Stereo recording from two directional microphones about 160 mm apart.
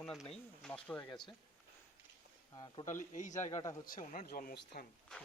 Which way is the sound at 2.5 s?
25° left (ahead or behind).